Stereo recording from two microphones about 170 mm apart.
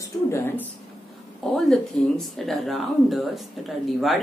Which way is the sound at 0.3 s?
15° left (ahead or behind).